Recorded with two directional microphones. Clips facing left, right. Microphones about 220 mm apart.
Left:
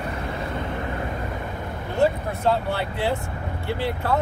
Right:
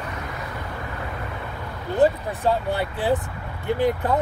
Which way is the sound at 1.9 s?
15° right (ahead or behind).